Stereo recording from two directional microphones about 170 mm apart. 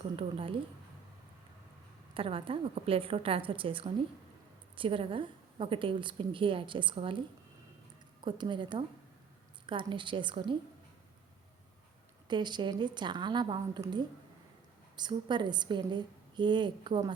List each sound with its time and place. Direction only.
0.2 s a woman's voice: 30° right (ahead or behind)
2.1 s a woman's voice: 30° right (ahead or behind)
8.2 s a woman's voice: 25° right (ahead or behind)
12.3 s a woman's voice: 25° right (ahead or behind)